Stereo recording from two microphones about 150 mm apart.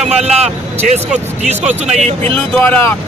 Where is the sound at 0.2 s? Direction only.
45° right (ahead or behind).